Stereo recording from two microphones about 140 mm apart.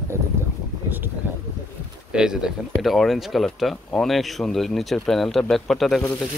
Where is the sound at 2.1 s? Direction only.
5° right (ahead or behind).